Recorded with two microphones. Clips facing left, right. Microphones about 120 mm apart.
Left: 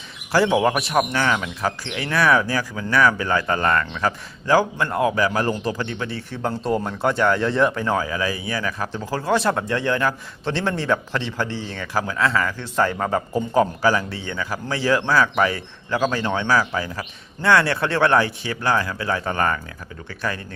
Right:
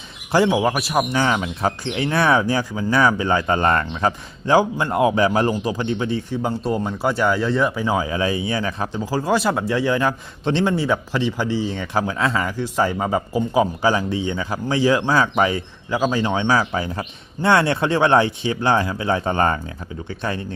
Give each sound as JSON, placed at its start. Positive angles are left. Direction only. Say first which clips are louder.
{"t": 0.4, "sound": "speech", "louder": "even", "side_deg": -5}
{"t": 1.1, "sound": "speech", "louder": "right 2 dB", "side_deg": -25}
{"t": 6.5, "sound": "speech", "louder": "left 3 dB", "side_deg": 0}
{"t": 8.0, "sound": "speech", "louder": "right 3 dB", "side_deg": -25}
{"t": 9.0, "sound": "a man's voice", "louder": "right 1 dB", "side_deg": -10}